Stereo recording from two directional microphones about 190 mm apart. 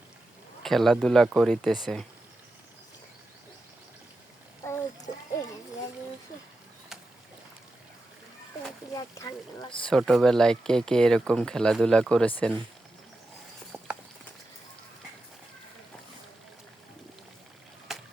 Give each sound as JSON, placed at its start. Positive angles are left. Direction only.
{"t": 0.6, "sound": "speech", "side_deg": 0}
{"t": 4.6, "sound": "a sound", "side_deg": 15}
{"t": 5.1, "sound": "a sound", "side_deg": 40}
{"t": 9.0, "sound": "boat", "side_deg": 20}
{"t": 9.9, "sound": "speech", "side_deg": 0}
{"t": 13.7, "sound": "horse", "side_deg": -10}
{"t": 17.9, "sound": "boat", "side_deg": 0}